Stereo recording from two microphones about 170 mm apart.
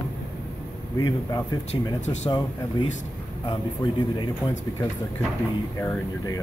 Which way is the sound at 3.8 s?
25° left (ahead or behind).